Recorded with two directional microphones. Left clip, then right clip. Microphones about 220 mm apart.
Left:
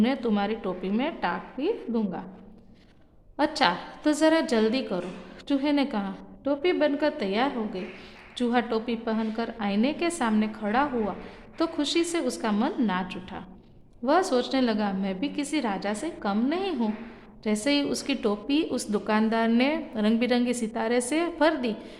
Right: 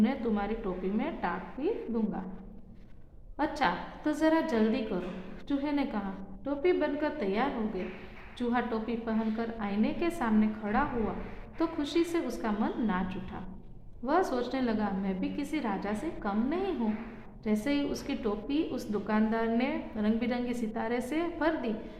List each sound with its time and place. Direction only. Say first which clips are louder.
0.0 s a woman's voice: left 5 dB; 40° left (ahead or behind)
3.3 s a woman's voice: left 6 dB; 40° left (ahead or behind)